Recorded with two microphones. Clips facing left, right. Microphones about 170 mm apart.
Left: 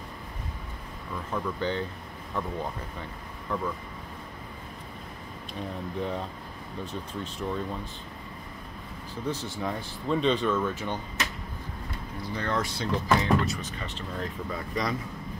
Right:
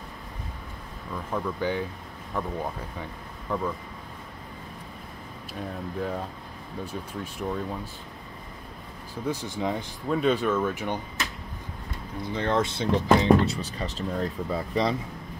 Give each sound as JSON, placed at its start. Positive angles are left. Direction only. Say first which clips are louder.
{"t": 1.1, "sound": "speech", "louder": "right 2 dB", "side_deg": -10}
{"t": 5.5, "sound": "speech", "louder": "right 1 dB", "side_deg": -5}
{"t": 9.2, "sound": "speech", "louder": "right 3 dB", "side_deg": -10}
{"t": 10.0, "sound": "speech", "louder": "right 1 dB", "side_deg": -5}
{"t": 12.2, "sound": "speech", "louder": "right 5 dB", "side_deg": -20}
{"t": 13.4, "sound": "speech", "louder": "right 4 dB", "side_deg": -35}